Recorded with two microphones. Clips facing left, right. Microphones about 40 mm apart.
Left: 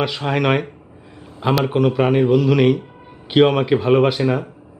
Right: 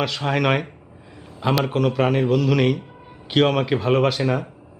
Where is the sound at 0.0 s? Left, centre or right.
Centre.